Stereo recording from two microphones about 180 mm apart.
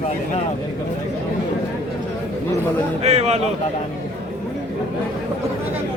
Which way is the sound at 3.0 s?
35° right (ahead or behind).